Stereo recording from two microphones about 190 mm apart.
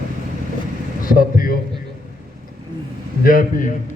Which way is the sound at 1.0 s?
50° left (ahead or behind).